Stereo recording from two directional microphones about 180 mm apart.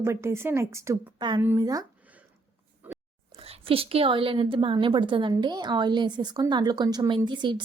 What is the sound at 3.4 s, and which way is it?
A woman's voice, 30° right (ahead or behind).